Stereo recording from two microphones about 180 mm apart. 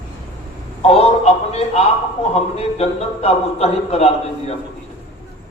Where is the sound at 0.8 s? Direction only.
35° left (ahead or behind).